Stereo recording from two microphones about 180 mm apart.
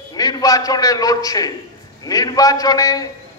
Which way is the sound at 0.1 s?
20° left (ahead or behind).